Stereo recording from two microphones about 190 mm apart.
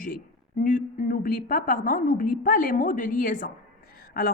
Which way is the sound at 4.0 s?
50° left (ahead or behind).